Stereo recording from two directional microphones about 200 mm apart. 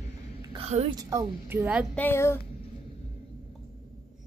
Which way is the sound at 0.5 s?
30° right (ahead or behind).